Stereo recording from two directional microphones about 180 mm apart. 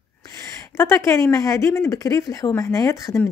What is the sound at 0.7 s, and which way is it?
A woman's voice, 15° left (ahead or behind).